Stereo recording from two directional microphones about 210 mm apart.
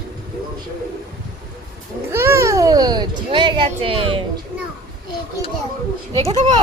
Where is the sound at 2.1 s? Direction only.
10° right (ahead or behind).